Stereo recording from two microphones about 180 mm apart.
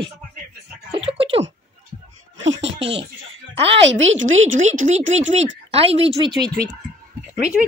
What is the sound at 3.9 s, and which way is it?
Speech, 90° right.